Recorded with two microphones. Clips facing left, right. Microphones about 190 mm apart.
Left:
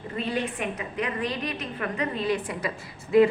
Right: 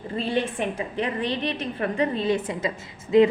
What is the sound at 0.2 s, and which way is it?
A woman's voice, 30° right (ahead or behind).